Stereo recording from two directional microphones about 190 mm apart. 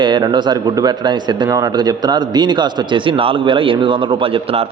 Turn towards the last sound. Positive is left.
turn(degrees=-30)  # may be behind; listen again after turning